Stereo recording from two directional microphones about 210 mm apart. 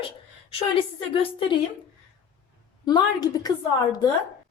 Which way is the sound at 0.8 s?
25° left (ahead or behind).